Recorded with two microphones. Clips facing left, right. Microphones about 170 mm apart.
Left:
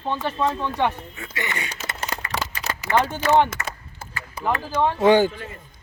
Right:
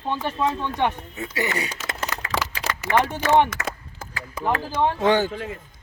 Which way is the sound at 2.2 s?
90° right.